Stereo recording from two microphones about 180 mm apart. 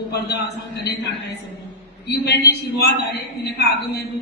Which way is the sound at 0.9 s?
70° left (ahead or behind).